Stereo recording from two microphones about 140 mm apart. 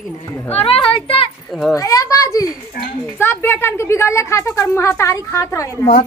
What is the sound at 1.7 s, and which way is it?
A woman's voice, 25° left (ahead or behind).